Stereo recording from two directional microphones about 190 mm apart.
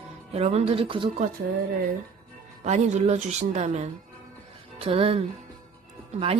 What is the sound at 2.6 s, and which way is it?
A woman's voice, 40° right (ahead or behind).